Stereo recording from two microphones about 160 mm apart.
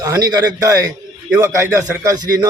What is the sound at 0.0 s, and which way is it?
A man's voice, 20° right (ahead or behind).